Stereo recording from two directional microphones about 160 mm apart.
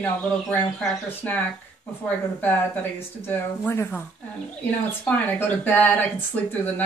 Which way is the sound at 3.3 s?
15° left (ahead or behind).